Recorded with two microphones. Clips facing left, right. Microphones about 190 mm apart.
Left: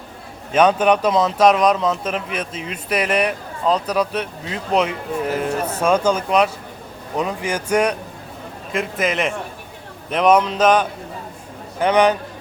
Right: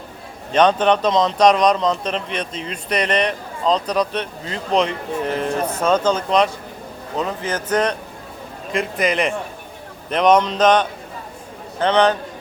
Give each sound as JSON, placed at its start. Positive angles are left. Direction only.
{"t": 0.5, "sound": "a man's voice", "side_deg": 10}